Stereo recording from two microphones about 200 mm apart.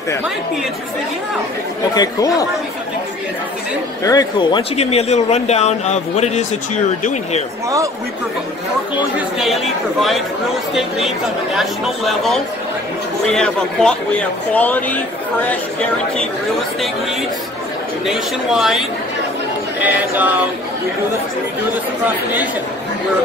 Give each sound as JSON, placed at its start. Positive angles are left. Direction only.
{"t": 2.0, "sound": "speech", "side_deg": 20}
{"t": 4.0, "sound": "speech", "side_deg": 15}
{"t": 10.7, "sound": "speech", "side_deg": 0}
{"t": 18.0, "sound": "speech", "side_deg": 0}
{"t": 19.8, "sound": "a sound", "side_deg": -10}